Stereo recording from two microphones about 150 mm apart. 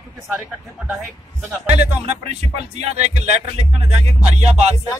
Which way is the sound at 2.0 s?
45° right (ahead or behind).